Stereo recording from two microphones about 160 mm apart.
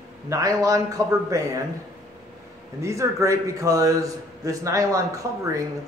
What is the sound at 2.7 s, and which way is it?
Mantra, 20° right (ahead or behind).